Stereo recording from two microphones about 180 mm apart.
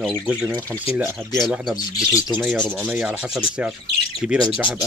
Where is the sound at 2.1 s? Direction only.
20° left (ahead or behind).